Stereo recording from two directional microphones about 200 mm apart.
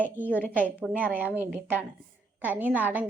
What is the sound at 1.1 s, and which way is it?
A woman's voice, 10° right (ahead or behind).